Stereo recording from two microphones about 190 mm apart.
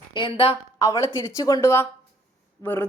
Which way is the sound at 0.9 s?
15° left (ahead or behind).